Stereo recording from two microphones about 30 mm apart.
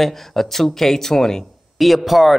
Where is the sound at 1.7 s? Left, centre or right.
Centre.